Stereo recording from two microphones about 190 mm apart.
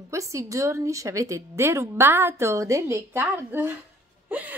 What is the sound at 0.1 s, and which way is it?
A woman's voice, 15° right (ahead or behind).